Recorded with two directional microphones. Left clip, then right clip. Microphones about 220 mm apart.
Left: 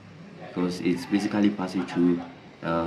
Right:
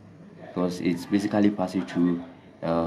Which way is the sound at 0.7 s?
70° right (ahead or behind).